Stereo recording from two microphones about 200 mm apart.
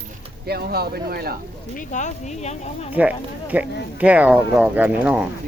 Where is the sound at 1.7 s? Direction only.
40° left (ahead or behind).